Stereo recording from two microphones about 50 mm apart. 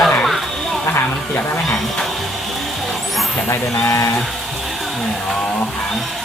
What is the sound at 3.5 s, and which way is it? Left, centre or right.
Speech, left.